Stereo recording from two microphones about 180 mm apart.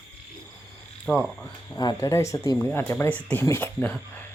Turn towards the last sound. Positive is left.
turn(degrees=10)  # may be behind; listen again after turning